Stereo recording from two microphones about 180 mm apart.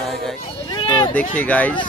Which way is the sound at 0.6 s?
25° left (ahead or behind).